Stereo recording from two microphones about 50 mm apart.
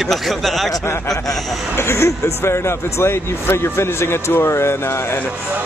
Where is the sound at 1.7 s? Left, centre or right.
Left.